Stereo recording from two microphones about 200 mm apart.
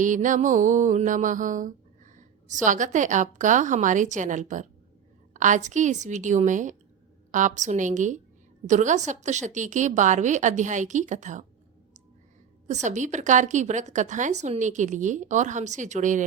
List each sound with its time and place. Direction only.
0.0 s mantra: 40° right (ahead or behind)
12.6 s mantra: 35° right (ahead or behind)